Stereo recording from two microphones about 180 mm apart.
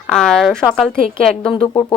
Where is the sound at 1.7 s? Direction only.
20° left (ahead or behind).